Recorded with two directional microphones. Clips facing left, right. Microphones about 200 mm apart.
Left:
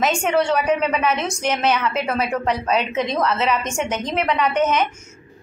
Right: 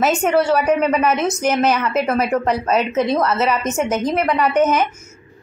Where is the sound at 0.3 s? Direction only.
5° right (ahead or behind).